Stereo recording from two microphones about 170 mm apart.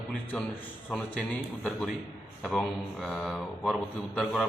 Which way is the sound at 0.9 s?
5° left (ahead or behind).